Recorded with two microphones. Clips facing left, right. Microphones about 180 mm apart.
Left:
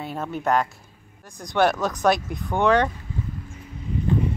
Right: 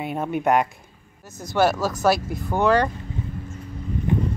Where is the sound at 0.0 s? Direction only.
15° right (ahead or behind).